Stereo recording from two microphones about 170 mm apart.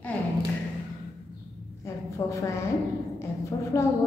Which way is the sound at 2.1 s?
15° left (ahead or behind).